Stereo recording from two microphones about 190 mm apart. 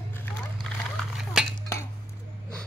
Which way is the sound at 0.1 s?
5° left (ahead or behind).